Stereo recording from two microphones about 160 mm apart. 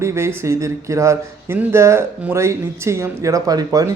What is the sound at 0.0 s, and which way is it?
A man's voice, 15° right (ahead or behind).